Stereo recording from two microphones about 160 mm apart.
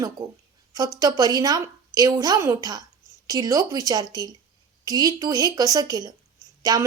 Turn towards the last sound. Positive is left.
turn(degrees=-25)  # may be behind; listen again after turning